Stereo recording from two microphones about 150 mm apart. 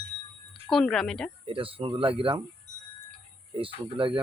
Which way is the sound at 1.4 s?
35° right (ahead or behind).